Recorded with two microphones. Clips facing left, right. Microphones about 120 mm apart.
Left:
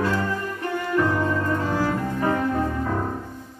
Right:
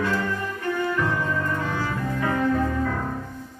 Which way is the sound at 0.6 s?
30° left (ahead or behind).